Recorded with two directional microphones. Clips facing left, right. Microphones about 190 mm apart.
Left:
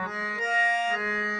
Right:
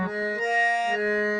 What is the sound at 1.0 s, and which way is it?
Music, 30° right (ahead or behind).